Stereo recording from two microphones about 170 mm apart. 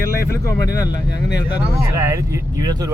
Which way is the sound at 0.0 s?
15° left (ahead or behind).